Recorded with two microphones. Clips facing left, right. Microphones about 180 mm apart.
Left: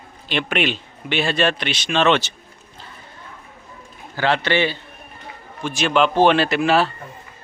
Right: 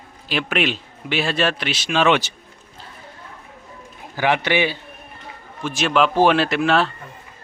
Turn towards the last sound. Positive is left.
turn(degrees=5)  # may be behind; listen again after turning